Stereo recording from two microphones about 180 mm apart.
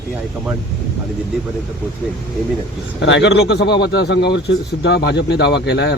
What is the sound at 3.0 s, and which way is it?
Speech, 80° left.